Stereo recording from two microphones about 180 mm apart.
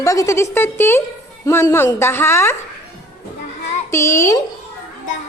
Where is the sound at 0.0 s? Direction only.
15° left (ahead or behind).